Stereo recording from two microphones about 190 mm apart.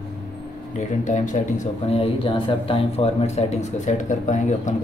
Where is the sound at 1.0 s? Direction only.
40° left (ahead or behind).